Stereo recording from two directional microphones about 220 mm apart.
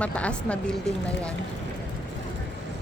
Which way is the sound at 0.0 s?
5° left (ahead or behind).